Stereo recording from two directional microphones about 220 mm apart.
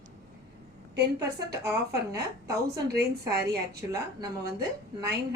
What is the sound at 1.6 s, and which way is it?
Speech, 15° right (ahead or behind).